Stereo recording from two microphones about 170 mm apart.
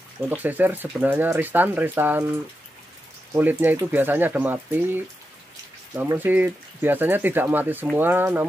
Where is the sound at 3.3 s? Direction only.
10° right (ahead or behind).